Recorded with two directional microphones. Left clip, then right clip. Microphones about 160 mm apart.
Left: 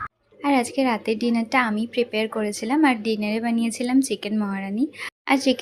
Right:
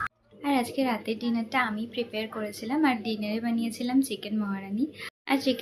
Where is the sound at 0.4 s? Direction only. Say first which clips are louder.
Left 6 dB; 50° left (ahead or behind).